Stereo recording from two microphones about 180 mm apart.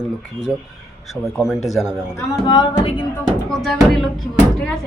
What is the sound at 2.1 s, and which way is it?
Speech, 25° left (ahead or behind).